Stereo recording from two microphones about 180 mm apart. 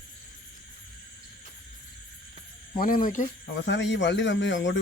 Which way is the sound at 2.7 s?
50° left (ahead or behind).